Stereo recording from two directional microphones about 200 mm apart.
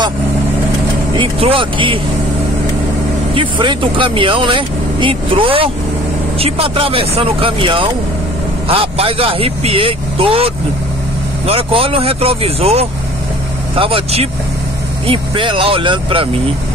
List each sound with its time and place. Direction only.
1.1 s speech: 25° right (ahead or behind)
3.3 s speech: 25° right (ahead or behind)